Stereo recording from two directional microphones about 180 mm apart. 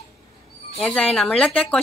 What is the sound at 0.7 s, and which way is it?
Speech, 5° left (ahead or behind).